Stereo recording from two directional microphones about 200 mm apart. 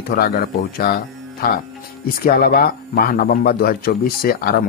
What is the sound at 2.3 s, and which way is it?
A man's voice, 50° left (ahead or behind).